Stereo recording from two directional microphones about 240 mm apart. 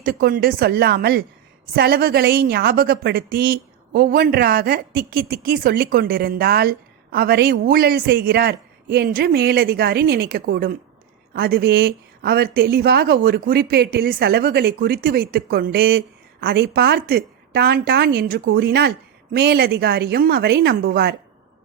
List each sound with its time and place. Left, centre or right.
0.0 s speech: right